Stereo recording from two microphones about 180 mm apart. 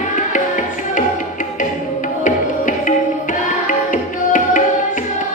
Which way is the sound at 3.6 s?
45° left (ahead or behind).